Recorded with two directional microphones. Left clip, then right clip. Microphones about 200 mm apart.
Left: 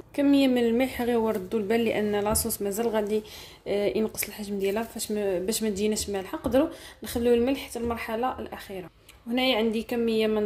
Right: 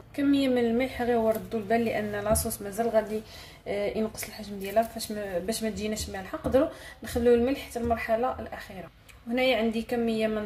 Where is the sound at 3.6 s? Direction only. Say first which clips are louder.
Left 3 dB; 40° left (ahead or behind).